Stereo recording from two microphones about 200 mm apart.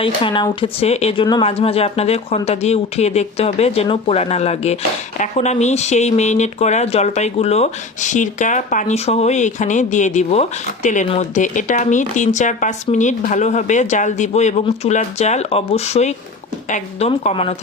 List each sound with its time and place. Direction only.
0.0 s speech: 25° left (ahead or behind)
17.1 s speech: 25° left (ahead or behind)